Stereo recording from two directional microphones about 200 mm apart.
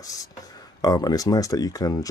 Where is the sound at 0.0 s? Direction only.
15° left (ahead or behind).